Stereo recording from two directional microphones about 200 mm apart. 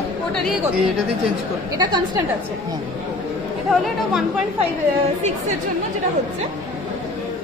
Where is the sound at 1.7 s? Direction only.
20° right (ahead or behind).